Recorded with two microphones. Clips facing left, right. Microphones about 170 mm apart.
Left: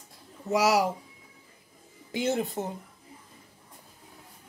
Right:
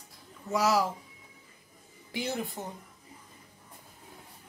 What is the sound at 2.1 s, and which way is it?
Speech, 20° left (ahead or behind).